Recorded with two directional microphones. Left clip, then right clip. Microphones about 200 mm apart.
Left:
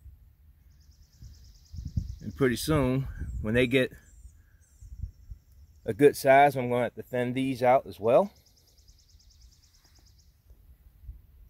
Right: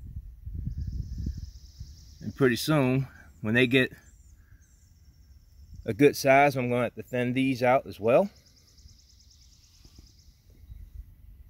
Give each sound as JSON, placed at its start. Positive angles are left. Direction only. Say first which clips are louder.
{"t": 2.1, "sound": "speech", "louder": "right 2 dB", "side_deg": 0}
{"t": 5.9, "sound": "speech", "louder": "left 1 dB", "side_deg": 0}